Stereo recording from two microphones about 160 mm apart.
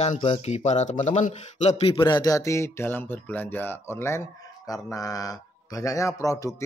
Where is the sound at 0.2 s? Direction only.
40° left (ahead or behind).